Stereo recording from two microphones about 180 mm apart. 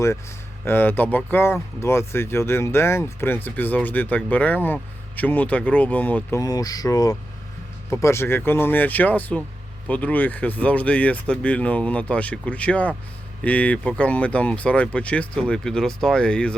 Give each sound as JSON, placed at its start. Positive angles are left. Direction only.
{"t": 0.6, "sound": "speech", "side_deg": 10}
{"t": 6.4, "sound": "speech", "side_deg": 20}